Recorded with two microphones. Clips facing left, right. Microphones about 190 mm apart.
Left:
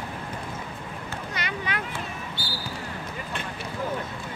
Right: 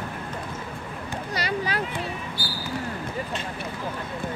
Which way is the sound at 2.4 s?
25° left (ahead or behind).